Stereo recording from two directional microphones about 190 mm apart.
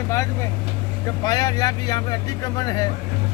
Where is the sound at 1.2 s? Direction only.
20° left (ahead or behind).